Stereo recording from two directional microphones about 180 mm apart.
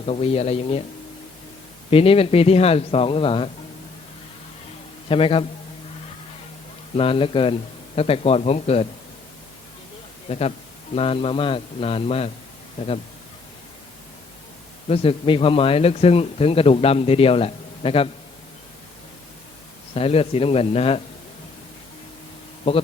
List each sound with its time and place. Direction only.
0.0 s speech: 35° left (ahead or behind)
1.9 s speech: 30° left (ahead or behind)
5.0 s speech: 30° left (ahead or behind)
6.9 s speech: 30° left (ahead or behind)
10.2 s speech: 35° left (ahead or behind)
14.8 s speech: 35° left (ahead or behind)
19.9 s speech: 35° left (ahead or behind)
22.7 s speech: 30° left (ahead or behind)